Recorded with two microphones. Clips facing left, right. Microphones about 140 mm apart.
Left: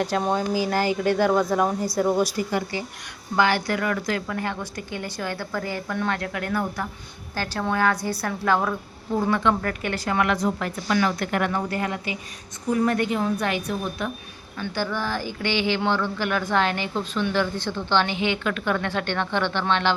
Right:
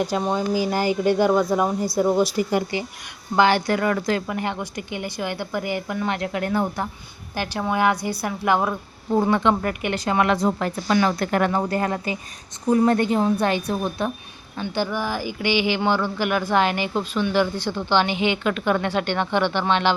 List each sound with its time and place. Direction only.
0.1 s a woman's voice: 5° right (ahead or behind)
0.7 s a woman's voice: 15° right (ahead or behind)
3.3 s a woman's voice: 25° right (ahead or behind)
7.3 s a woman's voice: 15° right (ahead or behind); by 14.1 s 30° right (ahead or behind)
14.6 s speech: 15° right (ahead or behind)